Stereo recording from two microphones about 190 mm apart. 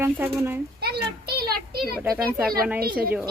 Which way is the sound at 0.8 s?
55° right (ahead or behind).